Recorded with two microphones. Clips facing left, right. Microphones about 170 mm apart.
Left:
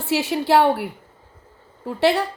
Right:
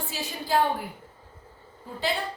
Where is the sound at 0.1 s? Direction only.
80° left.